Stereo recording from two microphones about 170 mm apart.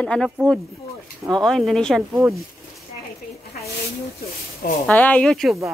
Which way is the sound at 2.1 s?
15° right (ahead or behind).